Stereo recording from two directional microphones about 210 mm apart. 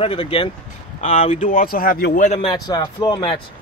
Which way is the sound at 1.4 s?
40° left (ahead or behind).